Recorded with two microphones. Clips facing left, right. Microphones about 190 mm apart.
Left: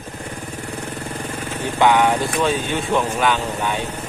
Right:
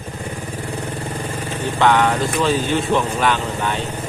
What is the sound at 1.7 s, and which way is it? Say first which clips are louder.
Speech: even; 10° left (ahead or behind).